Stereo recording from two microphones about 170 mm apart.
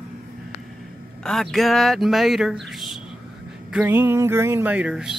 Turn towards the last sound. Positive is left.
turn(degrees=-5)  # may be behind; listen again after turning